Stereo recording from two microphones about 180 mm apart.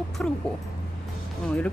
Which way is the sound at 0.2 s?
5° left (ahead or behind).